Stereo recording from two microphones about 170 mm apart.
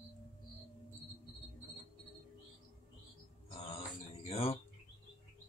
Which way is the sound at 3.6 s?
35° left (ahead or behind).